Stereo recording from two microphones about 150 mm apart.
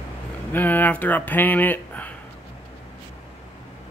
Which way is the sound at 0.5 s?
10° left (ahead or behind).